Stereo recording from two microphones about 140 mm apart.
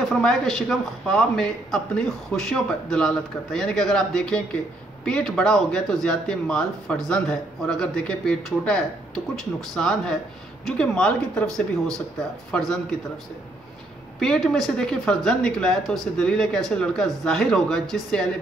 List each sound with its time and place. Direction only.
0.1 s speech: 5° left (ahead or behind)
14.2 s speech: 5° left (ahead or behind)